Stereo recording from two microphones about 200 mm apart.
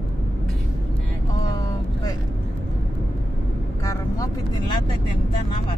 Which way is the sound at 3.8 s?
15° left (ahead or behind).